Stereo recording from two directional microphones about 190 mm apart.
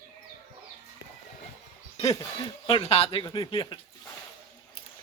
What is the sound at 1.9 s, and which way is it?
Speech, 20° left (ahead or behind).